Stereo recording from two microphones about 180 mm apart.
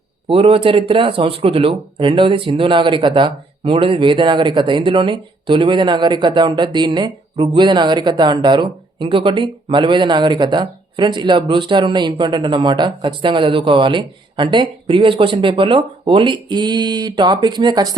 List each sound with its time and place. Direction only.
0.3 s speech: 30° right (ahead or behind)